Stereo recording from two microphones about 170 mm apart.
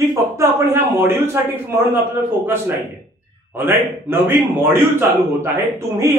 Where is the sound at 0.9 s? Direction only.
15° right (ahead or behind).